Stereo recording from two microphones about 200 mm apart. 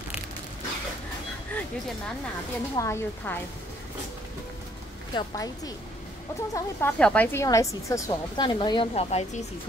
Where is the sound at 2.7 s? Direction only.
15° left (ahead or behind).